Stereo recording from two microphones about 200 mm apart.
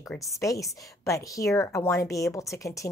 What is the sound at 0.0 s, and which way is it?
Speech, 15° left (ahead or behind).